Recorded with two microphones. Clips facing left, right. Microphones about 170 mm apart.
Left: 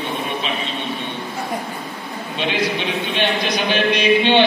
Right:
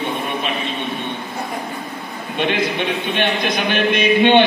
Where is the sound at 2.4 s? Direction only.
55° right (ahead or behind).